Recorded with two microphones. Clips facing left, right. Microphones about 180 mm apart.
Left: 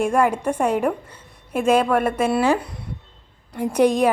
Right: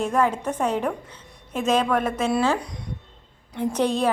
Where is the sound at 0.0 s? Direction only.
10° left (ahead or behind).